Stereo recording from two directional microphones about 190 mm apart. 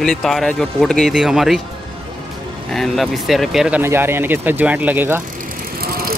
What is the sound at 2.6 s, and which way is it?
Speech, centre (ahead or behind).